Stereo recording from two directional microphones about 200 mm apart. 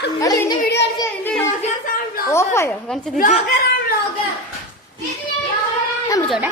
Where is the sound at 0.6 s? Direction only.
55° left (ahead or behind).